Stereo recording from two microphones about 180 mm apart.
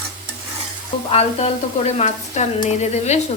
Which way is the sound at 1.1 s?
35° left (ahead or behind).